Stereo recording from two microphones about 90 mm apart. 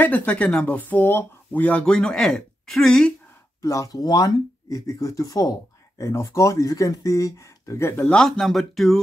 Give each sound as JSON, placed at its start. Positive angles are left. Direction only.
{"t": 0.0, "sound": "speech", "side_deg": 15}
{"t": 3.6, "sound": "speech", "side_deg": 40}
{"t": 7.9, "sound": "speech", "side_deg": 20}
{"t": 8.2, "sound": "speech", "side_deg": 5}